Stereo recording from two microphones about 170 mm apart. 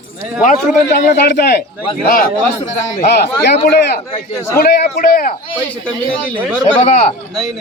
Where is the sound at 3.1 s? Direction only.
70° left (ahead or behind).